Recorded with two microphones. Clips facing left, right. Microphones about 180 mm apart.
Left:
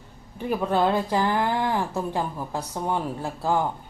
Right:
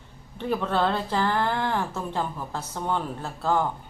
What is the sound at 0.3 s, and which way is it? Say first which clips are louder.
Speech: left 2 dB; 10° left (ahead or behind).